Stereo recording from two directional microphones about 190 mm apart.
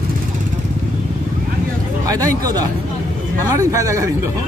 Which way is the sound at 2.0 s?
20° right (ahead or behind).